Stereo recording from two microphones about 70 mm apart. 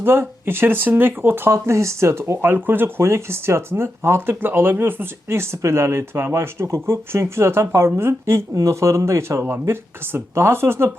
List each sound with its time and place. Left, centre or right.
0.0 s speech: right